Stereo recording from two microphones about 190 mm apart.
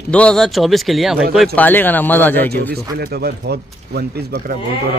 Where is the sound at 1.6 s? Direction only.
10° left (ahead or behind).